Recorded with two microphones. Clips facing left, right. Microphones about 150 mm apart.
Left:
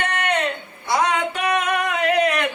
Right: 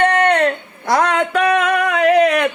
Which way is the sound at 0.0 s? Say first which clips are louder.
Right 9 dB; 55° right (ahead or behind).